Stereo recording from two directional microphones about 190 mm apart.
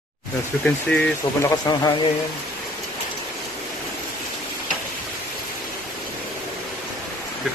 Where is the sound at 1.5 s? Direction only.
20° left (ahead or behind).